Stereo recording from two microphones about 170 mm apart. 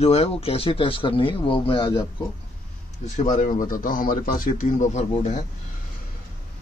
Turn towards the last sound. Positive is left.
turn(degrees=45)  # may be behind; listen again after turning